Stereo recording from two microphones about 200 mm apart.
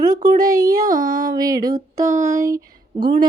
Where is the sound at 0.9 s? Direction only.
45° right (ahead or behind).